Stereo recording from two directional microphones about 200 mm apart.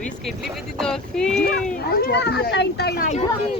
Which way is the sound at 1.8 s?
50° left (ahead or behind).